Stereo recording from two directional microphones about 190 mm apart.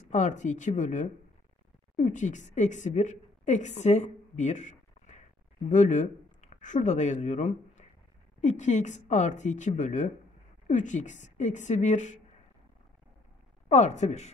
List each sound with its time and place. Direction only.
0.1 s a woman's voice: 40° left (ahead or behind)
13.7 s speech: 35° left (ahead or behind)